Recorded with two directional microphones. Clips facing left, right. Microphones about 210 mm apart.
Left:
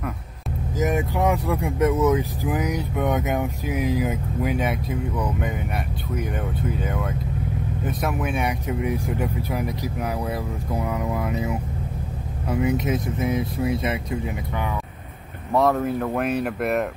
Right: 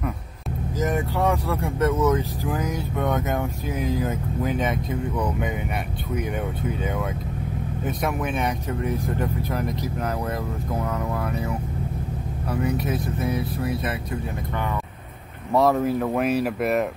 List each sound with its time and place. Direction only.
0.7 s speech: 15° left (ahead or behind)
6.8 s speech: centre (ahead or behind); by 13.9 s 25° left (ahead or behind)
15.5 s speech: centre (ahead or behind)